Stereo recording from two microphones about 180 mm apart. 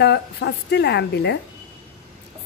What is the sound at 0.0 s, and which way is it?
Speech, 70° left (ahead or behind).